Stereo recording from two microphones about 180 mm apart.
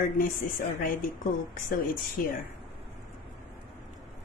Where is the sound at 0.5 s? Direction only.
50° left (ahead or behind).